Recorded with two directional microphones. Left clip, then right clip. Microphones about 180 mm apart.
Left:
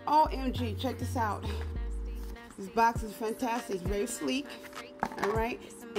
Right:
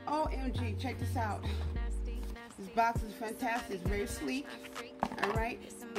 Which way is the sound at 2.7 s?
15° left (ahead or behind).